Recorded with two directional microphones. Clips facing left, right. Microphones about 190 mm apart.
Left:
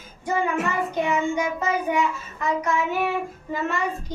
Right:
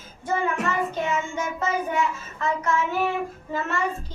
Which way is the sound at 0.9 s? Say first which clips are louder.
Left 4 dB; 15° left (ahead or behind).